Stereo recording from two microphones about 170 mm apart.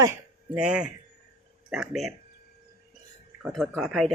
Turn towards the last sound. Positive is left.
turn(degrees=0)  # may be behind; listen again after turning